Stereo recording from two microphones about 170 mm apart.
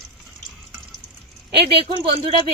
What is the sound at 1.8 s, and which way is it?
Speech, 30° right (ahead or behind).